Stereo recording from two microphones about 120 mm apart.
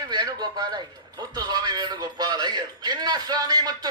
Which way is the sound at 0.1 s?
35° right (ahead or behind).